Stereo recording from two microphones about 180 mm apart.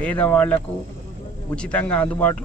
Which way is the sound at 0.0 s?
5° left (ahead or behind).